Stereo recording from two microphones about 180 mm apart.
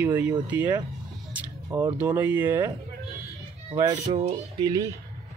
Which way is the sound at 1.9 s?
15° right (ahead or behind).